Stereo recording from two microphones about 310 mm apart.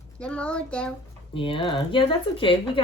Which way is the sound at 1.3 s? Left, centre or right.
Centre.